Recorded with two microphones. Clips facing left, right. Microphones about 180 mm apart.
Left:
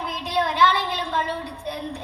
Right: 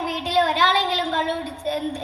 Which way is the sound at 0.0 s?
65° right (ahead or behind).